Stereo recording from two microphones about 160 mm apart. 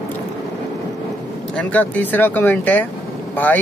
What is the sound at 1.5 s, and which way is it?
Speech, 10° left (ahead or behind).